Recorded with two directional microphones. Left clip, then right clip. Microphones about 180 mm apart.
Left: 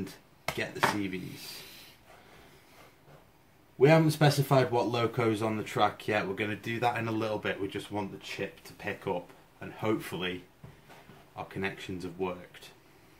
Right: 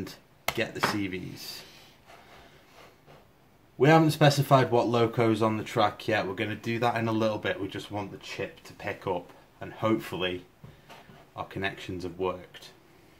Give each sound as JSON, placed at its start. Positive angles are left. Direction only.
{"t": 0.0, "sound": "speech", "side_deg": -30}
{"t": 3.8, "sound": "speech", "side_deg": -30}
{"t": 11.3, "sound": "speech", "side_deg": -30}